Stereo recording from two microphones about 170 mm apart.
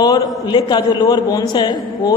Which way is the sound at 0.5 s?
25° left (ahead or behind).